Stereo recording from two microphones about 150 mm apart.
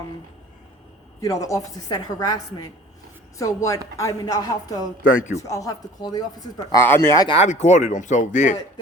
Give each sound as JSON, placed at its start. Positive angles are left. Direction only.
{"t": 1.2, "sound": "a woman's voice", "side_deg": 20}
{"t": 5.0, "sound": "a man's voice", "side_deg": 55}
{"t": 5.4, "sound": "a woman's voice", "side_deg": 20}
{"t": 6.8, "sound": "speech", "side_deg": 15}
{"t": 7.3, "sound": "speech", "side_deg": 50}